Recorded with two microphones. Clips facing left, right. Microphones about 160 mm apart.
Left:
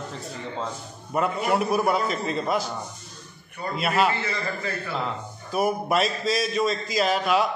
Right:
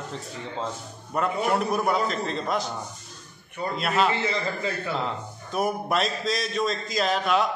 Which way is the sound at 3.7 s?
5° left (ahead or behind).